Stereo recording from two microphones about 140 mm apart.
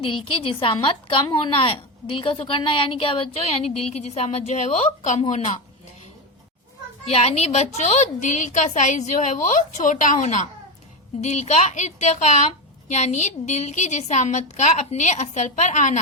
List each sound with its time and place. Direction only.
0.0 s a woman's voice: 40° left (ahead or behind); by 5.2 s 55° left (ahead or behind)
7.1 s a woman's voice: 50° left (ahead or behind)